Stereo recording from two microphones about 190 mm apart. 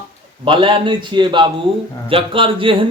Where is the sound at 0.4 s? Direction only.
25° right (ahead or behind).